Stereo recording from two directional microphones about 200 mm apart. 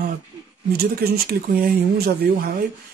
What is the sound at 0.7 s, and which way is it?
Speech, 50° right (ahead or behind).